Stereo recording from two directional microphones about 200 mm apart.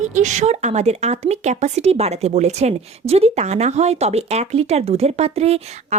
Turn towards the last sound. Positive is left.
turn(degrees=-30)  # may be behind; listen again after turning